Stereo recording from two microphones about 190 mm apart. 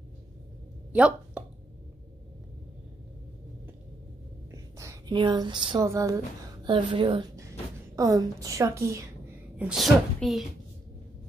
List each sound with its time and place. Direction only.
0.9 s a sound: 5° right (ahead or behind)
4.5 s whispering: 15° right (ahead or behind)
5.1 s a woman's voice: 25° right (ahead or behind)
9.6 s a woman's voice: centre (ahead or behind)